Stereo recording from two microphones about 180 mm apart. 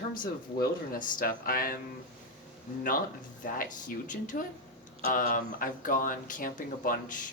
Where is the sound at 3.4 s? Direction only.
45° left (ahead or behind).